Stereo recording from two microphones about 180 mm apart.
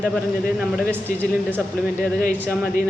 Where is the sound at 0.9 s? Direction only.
10° right (ahead or behind).